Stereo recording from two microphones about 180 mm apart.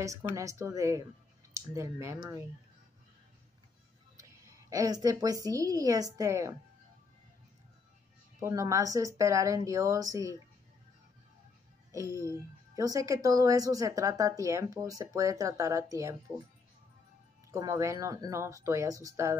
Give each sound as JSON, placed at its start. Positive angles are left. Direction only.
{"t": 0.0, "sound": "speech", "side_deg": -15}
{"t": 4.2, "sound": "a woman's voice", "side_deg": -20}
{"t": 8.4, "sound": "speech", "side_deg": -15}
{"t": 11.9, "sound": "speech", "side_deg": -20}
{"t": 17.5, "sound": "speech", "side_deg": -20}